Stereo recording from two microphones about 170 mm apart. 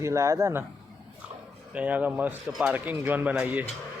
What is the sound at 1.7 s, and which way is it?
Speech, 10° right (ahead or behind).